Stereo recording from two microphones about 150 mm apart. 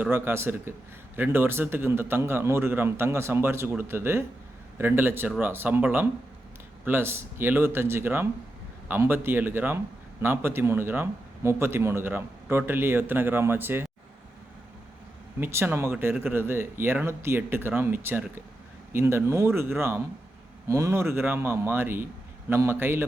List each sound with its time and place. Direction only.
0.0 s a man's voice: 15° right (ahead or behind)
15.4 s a man's voice: 15° right (ahead or behind)